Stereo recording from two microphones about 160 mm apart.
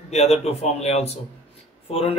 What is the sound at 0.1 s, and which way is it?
Speech, 45° left (ahead or behind).